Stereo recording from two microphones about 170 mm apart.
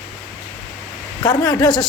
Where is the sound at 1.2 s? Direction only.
25° left (ahead or behind).